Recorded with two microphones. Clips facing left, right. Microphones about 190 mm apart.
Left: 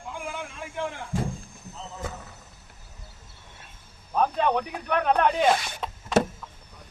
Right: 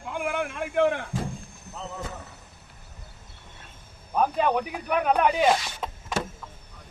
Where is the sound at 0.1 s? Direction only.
65° right (ahead or behind).